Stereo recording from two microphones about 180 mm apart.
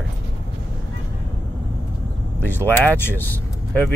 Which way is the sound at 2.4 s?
10° left (ahead or behind).